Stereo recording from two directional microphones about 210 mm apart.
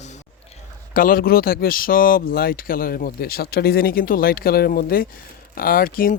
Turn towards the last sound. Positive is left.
turn(degrees=45)  # may be behind; listen again after turning